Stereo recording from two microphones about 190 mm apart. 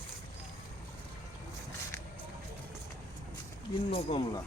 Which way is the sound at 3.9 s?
30° left (ahead or behind).